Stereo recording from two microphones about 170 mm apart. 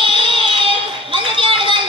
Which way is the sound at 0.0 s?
30° right (ahead or behind).